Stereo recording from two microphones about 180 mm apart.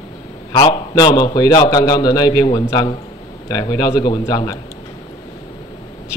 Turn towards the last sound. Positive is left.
turn(degrees=20)  # may be behind; listen again after turning